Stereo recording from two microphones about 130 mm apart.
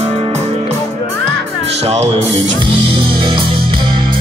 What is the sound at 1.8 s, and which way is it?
Music, 50° right (ahead or behind).